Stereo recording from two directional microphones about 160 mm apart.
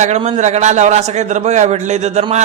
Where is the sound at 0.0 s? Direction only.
45° right (ahead or behind).